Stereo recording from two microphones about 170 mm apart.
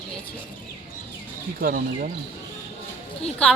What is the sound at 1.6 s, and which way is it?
Speech, 60° right (ahead or behind).